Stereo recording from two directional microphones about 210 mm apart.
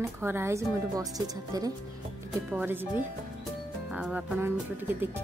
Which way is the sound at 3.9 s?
5° right (ahead or behind).